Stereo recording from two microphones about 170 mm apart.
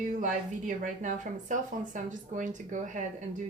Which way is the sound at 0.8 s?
50° right (ahead or behind).